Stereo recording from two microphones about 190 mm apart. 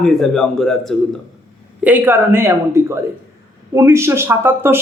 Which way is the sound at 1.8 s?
10° right (ahead or behind).